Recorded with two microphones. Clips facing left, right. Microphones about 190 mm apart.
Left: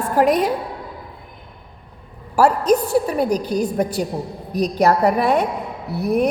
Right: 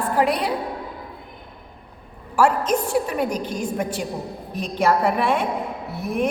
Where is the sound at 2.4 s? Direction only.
40° left (ahead or behind).